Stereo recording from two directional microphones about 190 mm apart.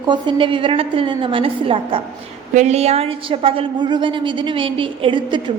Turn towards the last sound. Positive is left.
turn(degrees=-25)  # may be behind; listen again after turning